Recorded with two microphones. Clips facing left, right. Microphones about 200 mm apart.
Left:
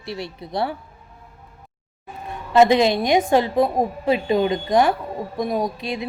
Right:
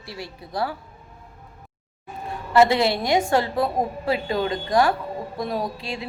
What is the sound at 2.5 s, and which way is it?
A woman's voice, 20° left (ahead or behind).